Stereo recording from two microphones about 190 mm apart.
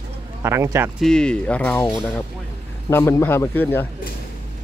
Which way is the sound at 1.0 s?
5° left (ahead or behind).